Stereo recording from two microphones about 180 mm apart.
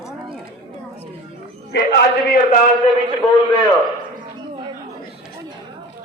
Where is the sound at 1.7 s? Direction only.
65° left (ahead or behind).